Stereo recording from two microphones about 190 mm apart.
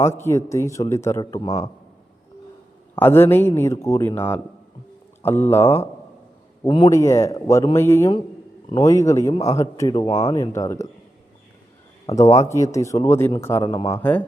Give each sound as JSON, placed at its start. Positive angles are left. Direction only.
{"t": 0.0, "sound": "a man's voice", "side_deg": 15}
{"t": 2.9, "sound": "a man's voice", "side_deg": 10}
{"t": 5.2, "sound": "a man's voice", "side_deg": 10}
{"t": 6.7, "sound": "a man's voice", "side_deg": 25}
{"t": 12.0, "sound": "a man's voice", "side_deg": 20}
{"t": 13.7, "sound": "speech", "side_deg": 25}
{"t": 14.0, "sound": "a man's voice", "side_deg": 10}